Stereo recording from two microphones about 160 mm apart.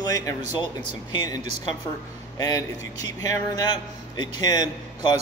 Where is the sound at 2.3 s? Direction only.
20° left (ahead or behind).